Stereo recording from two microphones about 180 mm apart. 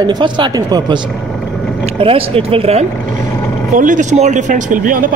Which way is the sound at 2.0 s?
30° right (ahead or behind).